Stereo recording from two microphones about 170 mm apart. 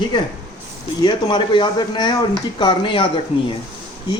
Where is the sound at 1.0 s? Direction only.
25° left (ahead or behind).